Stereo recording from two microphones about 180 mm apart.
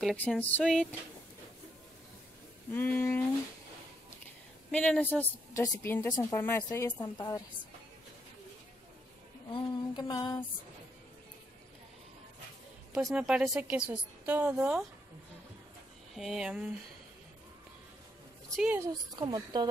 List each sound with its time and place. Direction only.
0.0 s a woman's voice: centre (ahead or behind)
2.7 s a woman's voice: 10° left (ahead or behind)
4.6 s a woman's voice: 5° left (ahead or behind); by 7.4 s 25° left (ahead or behind)
9.5 s a woman's voice: 25° left (ahead or behind)
12.9 s a woman's voice: centre (ahead or behind)
16.2 s a woman's voice: 5° right (ahead or behind)
18.6 s speech: 10° right (ahead or behind)
18.9 s speech: 25° right (ahead or behind)